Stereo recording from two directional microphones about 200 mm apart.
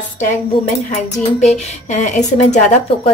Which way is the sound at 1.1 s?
35° left (ahead or behind).